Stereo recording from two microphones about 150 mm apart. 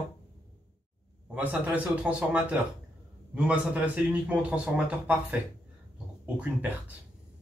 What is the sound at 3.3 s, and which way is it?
Speech, 10° right (ahead or behind).